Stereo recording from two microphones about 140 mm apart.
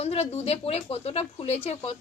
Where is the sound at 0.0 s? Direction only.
45° left (ahead or behind).